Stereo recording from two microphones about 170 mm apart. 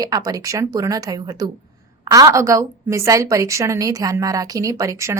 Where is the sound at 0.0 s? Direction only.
20° right (ahead or behind).